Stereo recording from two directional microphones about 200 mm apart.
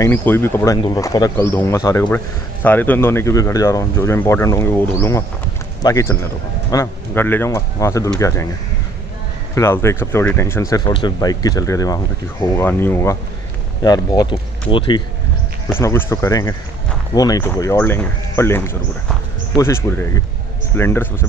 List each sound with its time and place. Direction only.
0.0 s a man's voice: 10° left (ahead or behind)
9.6 s speech: 15° left (ahead or behind)
15.7 s speech: 10° left (ahead or behind)